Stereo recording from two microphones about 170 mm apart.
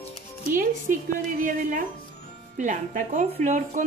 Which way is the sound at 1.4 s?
50° right (ahead or behind).